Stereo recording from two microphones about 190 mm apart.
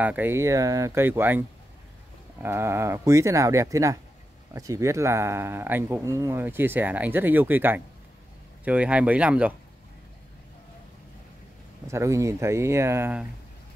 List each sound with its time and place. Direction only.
0.0 s speech: 10° right (ahead or behind)
2.4 s speech: 15° right (ahead or behind)
11.9 s speech: 15° right (ahead or behind)